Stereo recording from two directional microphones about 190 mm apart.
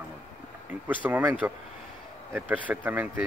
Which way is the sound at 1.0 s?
10° right (ahead or behind).